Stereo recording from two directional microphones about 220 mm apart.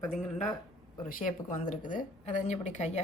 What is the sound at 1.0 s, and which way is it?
Speech, 40° left (ahead or behind).